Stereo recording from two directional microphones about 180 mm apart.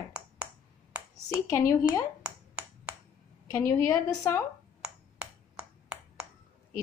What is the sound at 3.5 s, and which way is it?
Speech, 10° left (ahead or behind).